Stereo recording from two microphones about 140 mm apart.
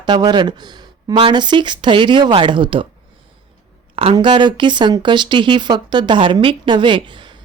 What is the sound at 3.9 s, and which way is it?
Speech, 40° right (ahead or behind).